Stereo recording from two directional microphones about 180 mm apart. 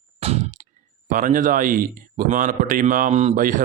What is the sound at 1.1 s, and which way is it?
Speech, 50° right (ahead or behind).